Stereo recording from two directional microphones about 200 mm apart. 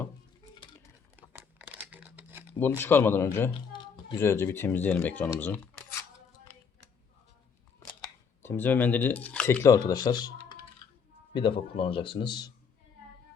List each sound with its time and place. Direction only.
1.1 s crumpling: 10° right (ahead or behind)
2.6 s speech: 10° left (ahead or behind)
8.4 s speech: 10° left (ahead or behind)